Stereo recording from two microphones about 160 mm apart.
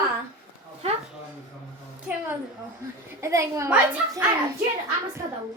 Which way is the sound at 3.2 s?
20° right (ahead or behind).